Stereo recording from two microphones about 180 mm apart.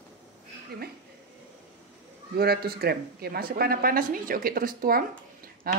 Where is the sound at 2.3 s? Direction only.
60° right (ahead or behind).